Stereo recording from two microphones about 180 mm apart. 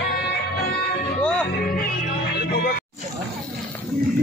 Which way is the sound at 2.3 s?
60° left (ahead or behind).